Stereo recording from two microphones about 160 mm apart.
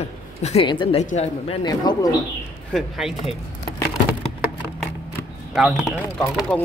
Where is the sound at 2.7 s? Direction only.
Centre (ahead or behind).